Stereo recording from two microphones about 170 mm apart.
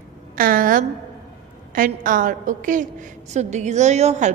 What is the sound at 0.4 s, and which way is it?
A woman's voice, 55° right (ahead or behind).